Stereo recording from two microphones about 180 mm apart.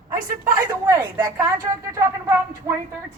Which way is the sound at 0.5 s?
20° right (ahead or behind).